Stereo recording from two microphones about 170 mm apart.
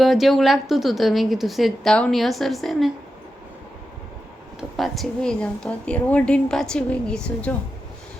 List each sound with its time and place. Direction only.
0.0 s a woman's voice: centre (ahead or behind)
4.8 s a woman's voice: centre (ahead or behind)